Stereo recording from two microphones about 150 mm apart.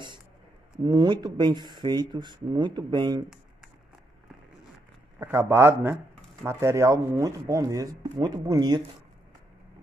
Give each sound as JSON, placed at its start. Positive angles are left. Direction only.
{"t": 0.8, "sound": "speech", "side_deg": -30}
{"t": 5.2, "sound": "a man's voice", "side_deg": -15}